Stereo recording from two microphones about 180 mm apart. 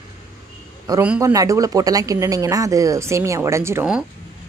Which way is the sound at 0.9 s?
15° right (ahead or behind).